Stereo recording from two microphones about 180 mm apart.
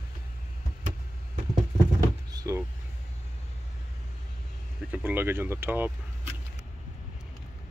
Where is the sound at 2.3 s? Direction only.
20° right (ahead or behind).